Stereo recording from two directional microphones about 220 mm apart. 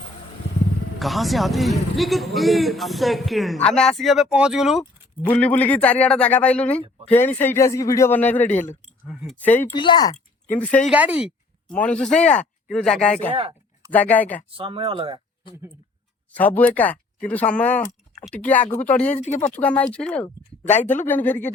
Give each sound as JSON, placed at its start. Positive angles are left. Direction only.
{"t": 0.9, "sound": "a man's voice", "side_deg": 0}
{"t": 9.7, "sound": "speech", "side_deg": 20}
{"t": 10.5, "sound": "a man's voice", "side_deg": 5}
{"t": 10.9, "sound": "speech", "side_deg": -5}
{"t": 11.8, "sound": "a man's voice", "side_deg": 5}
{"t": 13.3, "sound": "a sound", "side_deg": -20}
{"t": 13.9, "sound": "speech", "side_deg": 5}
{"t": 14.5, "sound": "speech", "side_deg": -25}
{"t": 16.3, "sound": "speech", "side_deg": 5}
{"t": 19.0, "sound": "speech", "side_deg": 35}
{"t": 19.5, "sound": "a man's voice", "side_deg": 5}
{"t": 20.2, "sound": "speech", "side_deg": 30}
{"t": 20.8, "sound": "speech", "side_deg": 10}